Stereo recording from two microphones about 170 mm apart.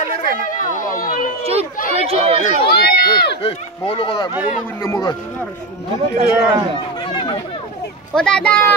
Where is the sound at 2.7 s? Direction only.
65° left (ahead or behind).